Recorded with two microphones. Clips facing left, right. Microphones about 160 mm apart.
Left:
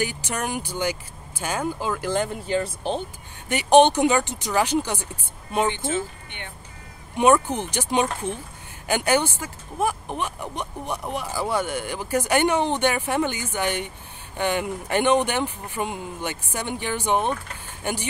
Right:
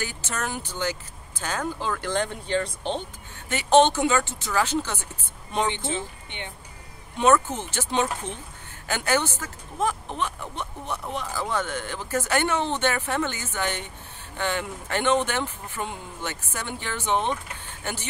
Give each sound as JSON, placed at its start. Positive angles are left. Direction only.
{"t": 0.0, "sound": "speech", "side_deg": 15}
{"t": 5.7, "sound": "speech", "side_deg": -20}
{"t": 7.2, "sound": "speech", "side_deg": 15}